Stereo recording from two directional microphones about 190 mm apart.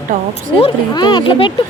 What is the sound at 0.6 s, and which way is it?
Speech, 25° left (ahead or behind).